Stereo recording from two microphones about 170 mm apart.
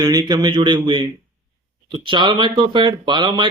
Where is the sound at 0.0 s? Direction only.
25° right (ahead or behind).